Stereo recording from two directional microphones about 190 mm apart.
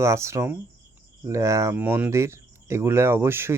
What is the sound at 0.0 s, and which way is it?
Speech, 15° right (ahead or behind).